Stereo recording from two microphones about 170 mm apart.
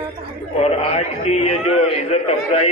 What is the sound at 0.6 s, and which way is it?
A man's voice, 35° left (ahead or behind).